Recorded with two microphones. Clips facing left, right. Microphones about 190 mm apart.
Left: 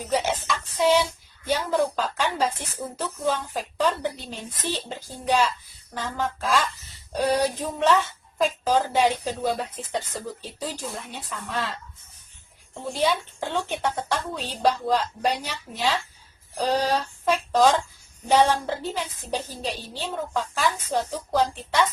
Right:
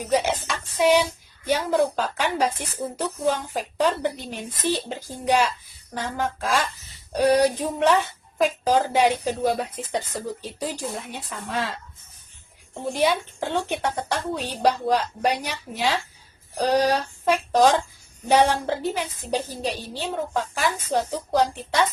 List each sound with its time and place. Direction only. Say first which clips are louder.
0.0 s a woman's voice: right 3 dB; 15° right (ahead or behind)
12.9 s a woman's voice: right 2 dB; 15° right (ahead or behind)